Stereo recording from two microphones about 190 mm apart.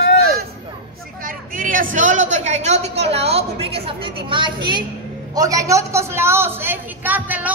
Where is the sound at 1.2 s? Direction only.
45° right (ahead or behind).